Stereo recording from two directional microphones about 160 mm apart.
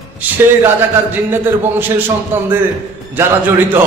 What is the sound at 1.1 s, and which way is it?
A man's voice, 10° right (ahead or behind).